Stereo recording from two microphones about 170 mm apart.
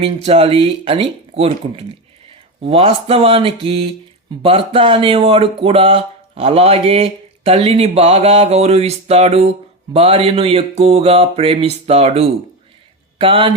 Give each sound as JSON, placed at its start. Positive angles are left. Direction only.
{"t": 0.0, "sound": "a man's voice", "side_deg": -35}